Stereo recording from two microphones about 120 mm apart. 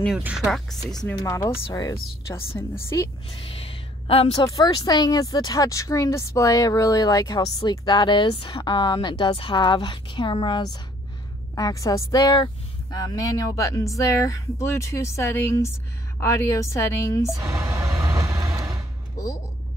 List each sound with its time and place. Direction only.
0.2 s speech: 10° right (ahead or behind)
1.2 s speech: 25° left (ahead or behind)
3.3 s a sound: 50° left (ahead or behind)
4.6 s speech: 30° left (ahead or behind)
17.4 s music: 25° right (ahead or behind)